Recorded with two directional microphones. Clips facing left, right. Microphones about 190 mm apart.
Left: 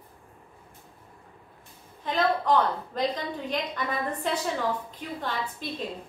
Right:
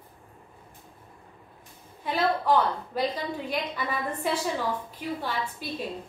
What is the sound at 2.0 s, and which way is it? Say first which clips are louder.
A woman's voice: even; 10° right (ahead or behind).